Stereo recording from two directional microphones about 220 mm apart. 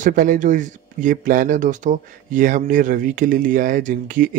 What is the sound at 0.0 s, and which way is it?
Speech, 35° right (ahead or behind).